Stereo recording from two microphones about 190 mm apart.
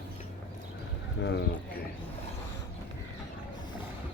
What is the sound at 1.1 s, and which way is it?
Speech, 65° left (ahead or behind).